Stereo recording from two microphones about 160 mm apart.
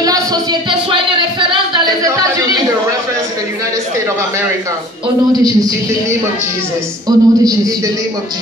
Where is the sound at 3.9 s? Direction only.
15° right (ahead or behind).